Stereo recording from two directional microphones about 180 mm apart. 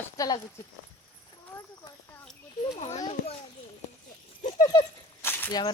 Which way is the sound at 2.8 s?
40° left (ahead or behind).